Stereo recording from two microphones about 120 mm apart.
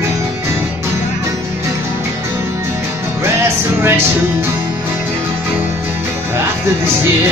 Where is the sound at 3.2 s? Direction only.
20° right (ahead or behind).